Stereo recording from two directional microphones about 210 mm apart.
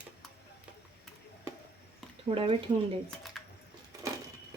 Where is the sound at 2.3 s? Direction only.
25° right (ahead or behind).